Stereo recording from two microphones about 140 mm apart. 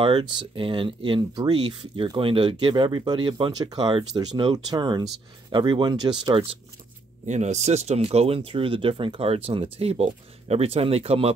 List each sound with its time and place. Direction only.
0.0 s speech: 40° right (ahead or behind)
7.2 s speech: 55° right (ahead or behind)